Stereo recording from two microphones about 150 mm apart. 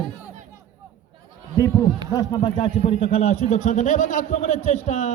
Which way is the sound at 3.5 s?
55° left (ahead or behind).